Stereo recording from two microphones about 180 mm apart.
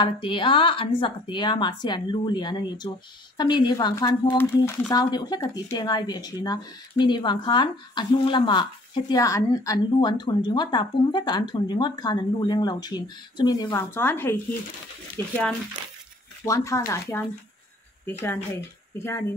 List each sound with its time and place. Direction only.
0.0 s speech: 25° left (ahead or behind)
16.4 s speech: 15° left (ahead or behind)
18.0 s speech: 10° left (ahead or behind)